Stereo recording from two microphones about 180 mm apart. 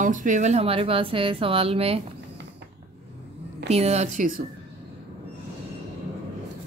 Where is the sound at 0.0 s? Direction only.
45° right (ahead or behind).